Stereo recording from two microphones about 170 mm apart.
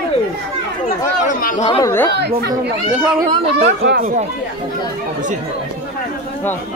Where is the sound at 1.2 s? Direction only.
50° left (ahead or behind).